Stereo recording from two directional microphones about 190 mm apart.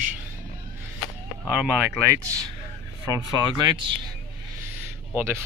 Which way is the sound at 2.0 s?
15° right (ahead or behind).